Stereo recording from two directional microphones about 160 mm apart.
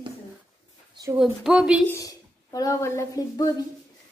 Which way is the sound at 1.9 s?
20° left (ahead or behind).